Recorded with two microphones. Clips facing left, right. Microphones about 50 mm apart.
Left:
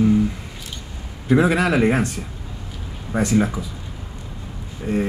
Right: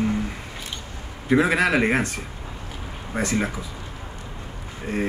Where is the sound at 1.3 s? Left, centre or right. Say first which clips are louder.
Left 2 dB; right.